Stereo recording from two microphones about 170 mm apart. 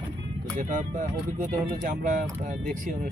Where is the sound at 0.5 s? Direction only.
50° right (ahead or behind).